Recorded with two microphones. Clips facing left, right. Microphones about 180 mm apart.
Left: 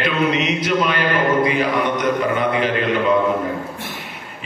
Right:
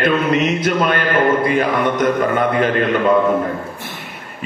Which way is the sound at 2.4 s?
50° right (ahead or behind).